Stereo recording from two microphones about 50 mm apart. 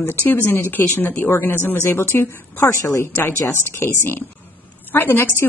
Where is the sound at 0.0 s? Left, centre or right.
Left.